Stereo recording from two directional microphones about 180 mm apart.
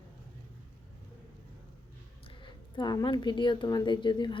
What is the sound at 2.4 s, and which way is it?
A woman's voice, 25° left (ahead or behind).